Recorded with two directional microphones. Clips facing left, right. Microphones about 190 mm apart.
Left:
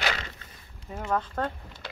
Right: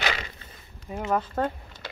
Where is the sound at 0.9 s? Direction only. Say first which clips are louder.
Right 3 dB; 10° right (ahead or behind).